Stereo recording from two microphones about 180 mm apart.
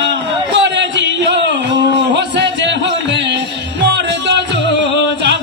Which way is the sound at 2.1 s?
75° right (ahead or behind).